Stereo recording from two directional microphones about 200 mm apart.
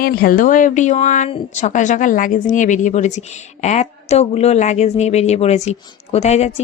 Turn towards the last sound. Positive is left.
turn(degrees=35)  # may be behind; listen again after turning